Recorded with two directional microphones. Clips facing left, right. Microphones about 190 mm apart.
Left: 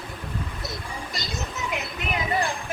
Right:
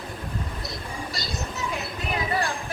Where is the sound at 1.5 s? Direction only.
20° left (ahead or behind).